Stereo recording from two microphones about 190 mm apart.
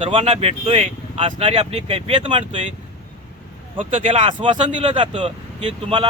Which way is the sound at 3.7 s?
30° right (ahead or behind).